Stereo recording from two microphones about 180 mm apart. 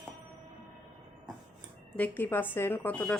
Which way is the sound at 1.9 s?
10° left (ahead or behind).